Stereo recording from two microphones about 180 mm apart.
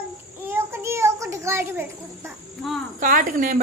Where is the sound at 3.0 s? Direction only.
50° right (ahead or behind).